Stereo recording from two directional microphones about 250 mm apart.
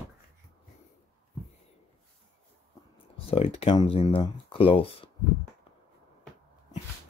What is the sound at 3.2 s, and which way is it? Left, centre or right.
Speech, left.